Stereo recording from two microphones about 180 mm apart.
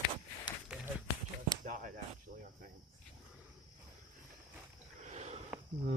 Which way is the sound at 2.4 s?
50° right (ahead or behind).